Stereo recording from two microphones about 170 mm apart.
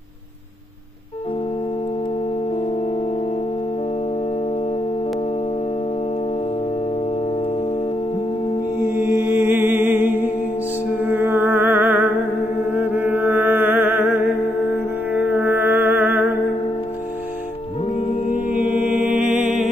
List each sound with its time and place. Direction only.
8.7 s music: 15° right (ahead or behind)
12.7 s mantra: 10° right (ahead or behind)
15.0 s music: 10° right (ahead or behind)
17.9 s music: 35° left (ahead or behind)
18.5 s mantra: 10° right (ahead or behind)